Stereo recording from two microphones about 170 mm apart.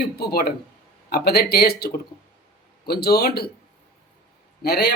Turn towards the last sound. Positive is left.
turn(degrees=75)  # may be behind; listen again after turning